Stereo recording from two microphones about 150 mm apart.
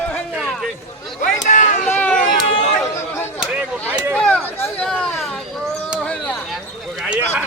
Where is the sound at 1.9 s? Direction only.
10° left (ahead or behind).